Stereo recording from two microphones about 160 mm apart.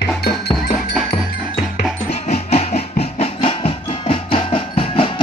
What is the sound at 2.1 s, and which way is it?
Music, 40° left (ahead or behind).